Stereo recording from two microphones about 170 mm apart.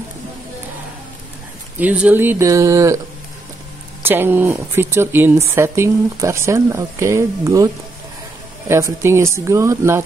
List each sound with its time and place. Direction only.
1.8 s speech: 10° right (ahead or behind)
4.0 s speech: 10° right (ahead or behind)